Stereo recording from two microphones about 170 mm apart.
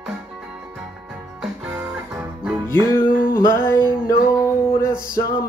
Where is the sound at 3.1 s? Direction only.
60° left (ahead or behind).